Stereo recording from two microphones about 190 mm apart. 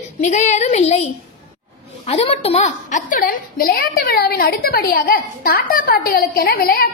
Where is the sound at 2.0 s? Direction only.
30° left (ahead or behind).